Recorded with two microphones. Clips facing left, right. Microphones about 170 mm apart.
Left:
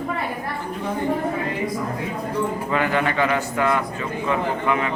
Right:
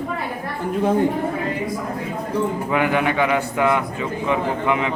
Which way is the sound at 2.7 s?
15° right (ahead or behind).